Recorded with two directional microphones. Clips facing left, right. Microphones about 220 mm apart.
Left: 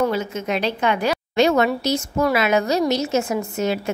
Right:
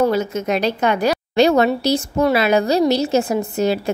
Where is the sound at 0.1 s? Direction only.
40° right (ahead or behind).